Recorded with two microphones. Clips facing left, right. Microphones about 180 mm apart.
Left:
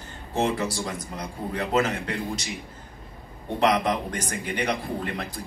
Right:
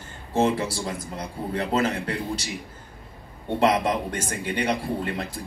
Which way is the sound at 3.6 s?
30° right (ahead or behind).